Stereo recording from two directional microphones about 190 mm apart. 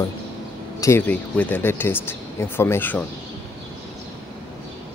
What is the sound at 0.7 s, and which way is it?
Speech, 15° left (ahead or behind).